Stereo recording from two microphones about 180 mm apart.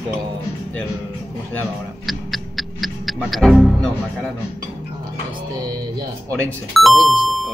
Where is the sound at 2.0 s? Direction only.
Centre (ahead or behind).